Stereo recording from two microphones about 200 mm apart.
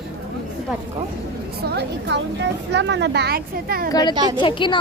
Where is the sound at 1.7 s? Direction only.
55° right (ahead or behind).